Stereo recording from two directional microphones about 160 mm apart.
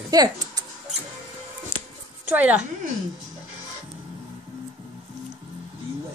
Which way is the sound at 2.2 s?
10° right (ahead or behind).